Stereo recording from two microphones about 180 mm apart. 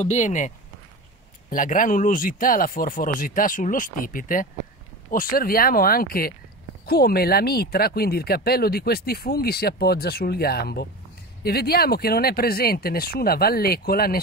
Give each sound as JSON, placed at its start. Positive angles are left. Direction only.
{"t": 0.0, "sound": "speech", "side_deg": 40}
{"t": 1.5, "sound": "speech", "side_deg": 50}